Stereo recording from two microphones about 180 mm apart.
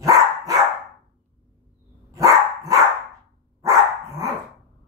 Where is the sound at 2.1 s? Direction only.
20° right (ahead or behind).